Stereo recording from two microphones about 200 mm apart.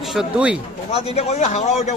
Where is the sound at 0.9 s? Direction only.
30° left (ahead or behind).